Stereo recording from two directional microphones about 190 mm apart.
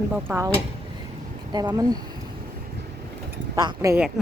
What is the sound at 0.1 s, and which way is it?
Speech, 15° right (ahead or behind).